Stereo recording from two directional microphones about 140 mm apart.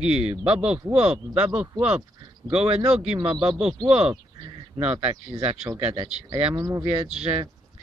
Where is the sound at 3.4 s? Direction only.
5° right (ahead or behind).